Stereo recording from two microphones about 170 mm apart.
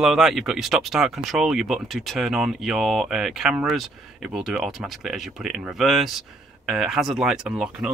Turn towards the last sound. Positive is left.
turn(degrees=-5)  # may be behind; listen again after turning